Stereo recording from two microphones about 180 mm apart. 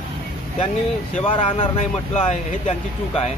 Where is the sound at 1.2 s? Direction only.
30° left (ahead or behind).